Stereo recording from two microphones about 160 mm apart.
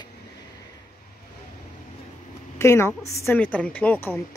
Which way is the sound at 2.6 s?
15° left (ahead or behind).